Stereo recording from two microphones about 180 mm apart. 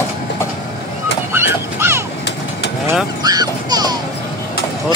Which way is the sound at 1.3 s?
10° right (ahead or behind).